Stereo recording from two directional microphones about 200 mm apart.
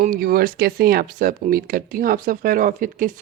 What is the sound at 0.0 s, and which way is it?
Speech, 45° right (ahead or behind).